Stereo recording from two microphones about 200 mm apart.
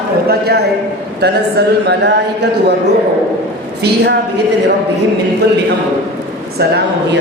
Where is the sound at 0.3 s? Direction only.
55° right (ahead or behind).